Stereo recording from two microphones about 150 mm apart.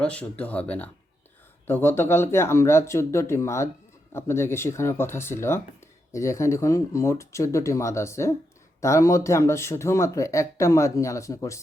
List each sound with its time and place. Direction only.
0.0 s speech: 10° left (ahead or behind)